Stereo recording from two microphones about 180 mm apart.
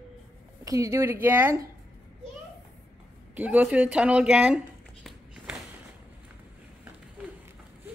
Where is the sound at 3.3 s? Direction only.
10° right (ahead or behind).